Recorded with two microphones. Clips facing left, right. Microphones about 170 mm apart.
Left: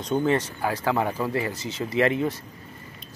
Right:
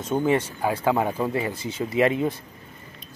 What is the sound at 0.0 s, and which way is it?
Speech, 10° right (ahead or behind).